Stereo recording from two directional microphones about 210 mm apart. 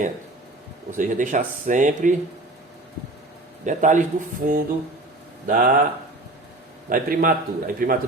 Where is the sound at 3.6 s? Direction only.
35° right (ahead or behind).